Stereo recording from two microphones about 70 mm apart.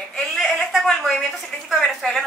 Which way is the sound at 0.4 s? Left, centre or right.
Centre.